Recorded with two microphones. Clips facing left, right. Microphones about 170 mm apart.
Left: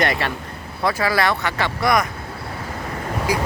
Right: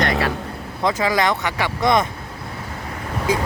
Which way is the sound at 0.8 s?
20° right (ahead or behind).